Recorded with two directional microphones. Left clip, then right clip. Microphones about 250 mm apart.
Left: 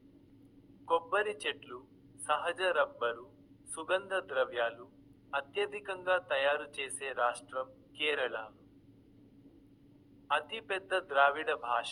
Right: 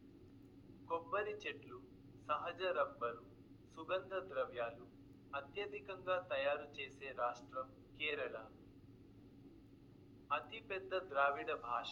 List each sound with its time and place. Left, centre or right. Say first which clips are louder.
0.9 s a man's voice: left 10 dB; left
10.2 s a man's voice: left 9 dB; left